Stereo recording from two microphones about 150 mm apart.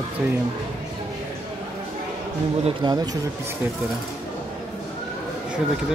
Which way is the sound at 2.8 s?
25° right (ahead or behind).